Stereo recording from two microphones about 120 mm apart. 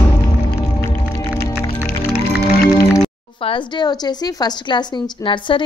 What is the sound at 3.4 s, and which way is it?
Speech, 50° left (ahead or behind).